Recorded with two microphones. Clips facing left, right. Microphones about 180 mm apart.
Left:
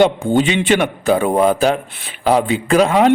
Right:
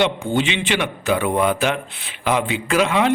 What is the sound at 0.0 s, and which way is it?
A man's voice, 45° left (ahead or behind).